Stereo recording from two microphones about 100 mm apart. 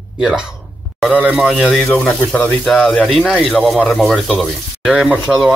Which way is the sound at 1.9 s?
15° left (ahead or behind).